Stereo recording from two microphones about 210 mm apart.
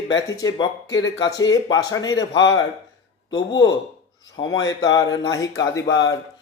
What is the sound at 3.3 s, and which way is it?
Speech, 20° left (ahead or behind).